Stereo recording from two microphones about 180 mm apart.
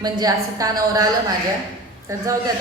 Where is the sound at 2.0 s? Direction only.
15° right (ahead or behind).